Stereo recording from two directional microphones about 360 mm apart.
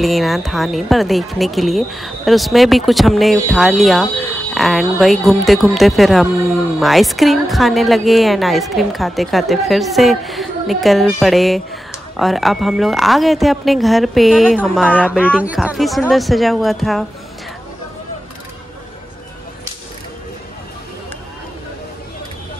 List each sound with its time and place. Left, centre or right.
0.0 s a woman's voice: centre